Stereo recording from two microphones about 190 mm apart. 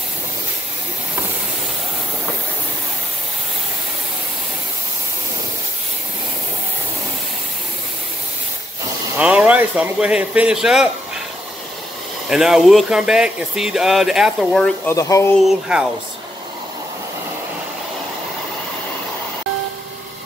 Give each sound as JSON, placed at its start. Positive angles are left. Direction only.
{"t": 9.2, "sound": "speech", "side_deg": -5}
{"t": 12.3, "sound": "speech", "side_deg": 0}
{"t": 14.9, "sound": "speech", "side_deg": 15}
{"t": 15.4, "sound": "speech", "side_deg": -5}